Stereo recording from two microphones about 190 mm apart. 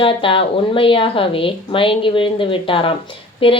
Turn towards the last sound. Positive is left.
turn(degrees=30)  # may be behind; listen again after turning